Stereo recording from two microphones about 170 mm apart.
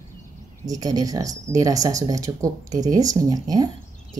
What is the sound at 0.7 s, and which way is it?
Speech, 20° right (ahead or behind).